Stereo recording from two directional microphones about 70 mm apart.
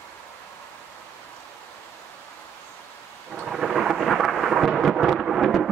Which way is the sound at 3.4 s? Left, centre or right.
Centre.